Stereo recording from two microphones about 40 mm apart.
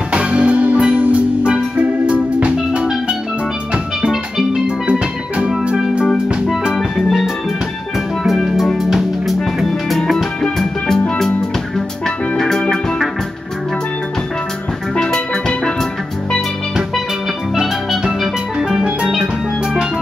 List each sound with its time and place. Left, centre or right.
0.1 s music: right
1.8 s music: right
2.4 s music: right
4.5 s music: right
6.7 s music: centre
9.9 s music: centre
12.4 s music: centre
15.0 s music: centre
18.2 s music: centre